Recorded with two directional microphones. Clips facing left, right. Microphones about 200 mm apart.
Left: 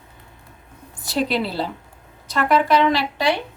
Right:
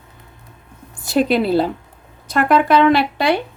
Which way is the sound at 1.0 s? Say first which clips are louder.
Right 6 dB; 50° right (ahead or behind).